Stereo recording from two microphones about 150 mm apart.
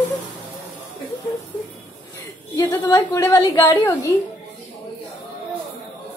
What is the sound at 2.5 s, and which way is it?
A woman's voice, 20° left (ahead or behind).